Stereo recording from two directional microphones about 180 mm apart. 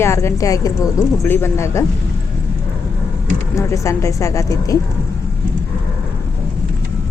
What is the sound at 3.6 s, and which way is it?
Speech, 15° left (ahead or behind).